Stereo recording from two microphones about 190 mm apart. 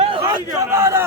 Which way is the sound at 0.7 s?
15° right (ahead or behind).